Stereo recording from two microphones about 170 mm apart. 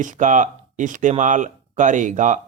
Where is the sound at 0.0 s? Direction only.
50° right (ahead or behind).